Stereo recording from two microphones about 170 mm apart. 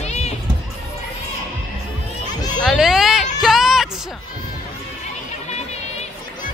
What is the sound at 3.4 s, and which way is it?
Music, centre (ahead or behind).